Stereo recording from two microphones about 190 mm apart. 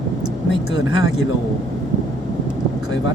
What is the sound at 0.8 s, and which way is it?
Speech, 90° left.